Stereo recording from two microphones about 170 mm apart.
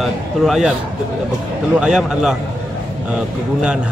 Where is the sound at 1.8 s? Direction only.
5° right (ahead or behind).